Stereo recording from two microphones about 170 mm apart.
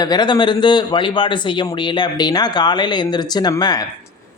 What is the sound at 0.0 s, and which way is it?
A man's voice, 25° left (ahead or behind).